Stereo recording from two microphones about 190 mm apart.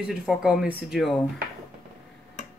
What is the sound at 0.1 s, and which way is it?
Speech, 5° right (ahead or behind).